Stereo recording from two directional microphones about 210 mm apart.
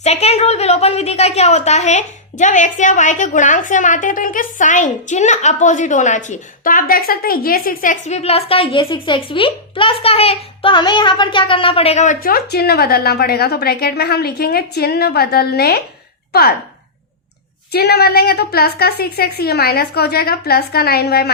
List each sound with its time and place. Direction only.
0.0 s a woman's voice: 30° left (ahead or behind); by 16.6 s 45° left (ahead or behind)
17.7 s a woman's voice: 50° left (ahead or behind)